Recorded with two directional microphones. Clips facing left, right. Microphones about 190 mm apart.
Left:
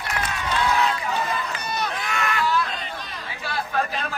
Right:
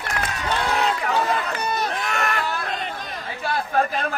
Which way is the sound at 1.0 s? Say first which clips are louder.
Right 4 dB; 65° right (ahead or behind).